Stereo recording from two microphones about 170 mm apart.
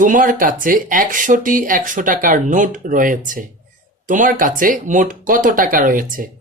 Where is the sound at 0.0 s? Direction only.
50° right (ahead or behind).